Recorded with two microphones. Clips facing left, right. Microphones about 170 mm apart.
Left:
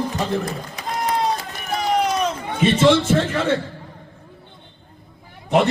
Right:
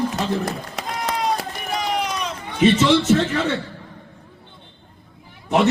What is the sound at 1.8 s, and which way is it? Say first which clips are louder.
Run: left 7 dB; 45° left (ahead or behind).